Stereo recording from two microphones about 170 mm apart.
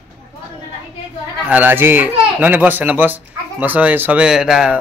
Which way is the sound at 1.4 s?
10° right (ahead or behind).